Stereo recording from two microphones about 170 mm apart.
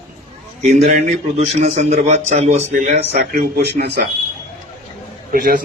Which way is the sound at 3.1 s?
70° right (ahead or behind).